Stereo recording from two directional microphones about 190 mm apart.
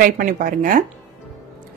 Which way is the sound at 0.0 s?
45° right (ahead or behind).